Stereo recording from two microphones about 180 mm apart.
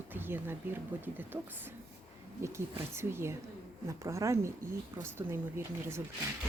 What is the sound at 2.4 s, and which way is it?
Speech, 15° right (ahead or behind).